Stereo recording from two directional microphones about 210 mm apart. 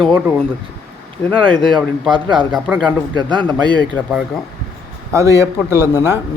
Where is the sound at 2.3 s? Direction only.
Centre (ahead or behind).